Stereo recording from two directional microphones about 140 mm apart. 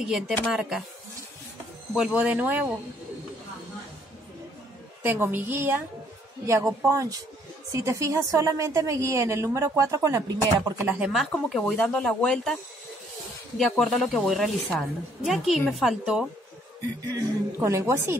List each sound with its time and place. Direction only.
0.5 s speech: 5° right (ahead or behind)
2.0 s a woman's voice: 10° right (ahead or behind)
5.0 s a woman's voice: 15° right (ahead or behind)
10.9 s speech: 5° right (ahead or behind)
13.6 s speech: 5° left (ahead or behind)
17.1 s a woman's voice: 20° right (ahead or behind)